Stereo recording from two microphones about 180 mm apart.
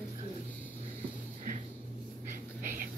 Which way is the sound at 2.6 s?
50° right (ahead or behind).